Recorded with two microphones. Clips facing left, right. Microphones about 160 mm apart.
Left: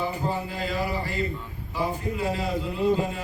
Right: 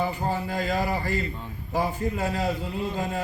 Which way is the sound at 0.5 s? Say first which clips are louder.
Right 2 dB; 45° right (ahead or behind).